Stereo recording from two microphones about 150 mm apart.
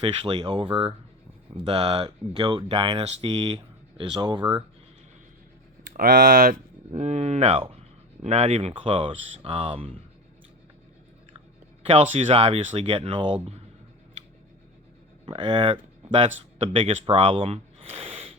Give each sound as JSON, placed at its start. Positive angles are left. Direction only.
{"t": 0.0, "sound": "speech", "side_deg": -35}
{"t": 6.0, "sound": "speech", "side_deg": -70}
{"t": 6.9, "sound": "speech", "side_deg": -50}
{"t": 11.8, "sound": "speech", "side_deg": -40}
{"t": 15.3, "sound": "speech", "side_deg": -30}